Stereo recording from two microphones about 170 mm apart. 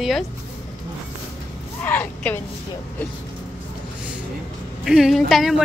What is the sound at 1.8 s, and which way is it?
Speech, 10° left (ahead or behind).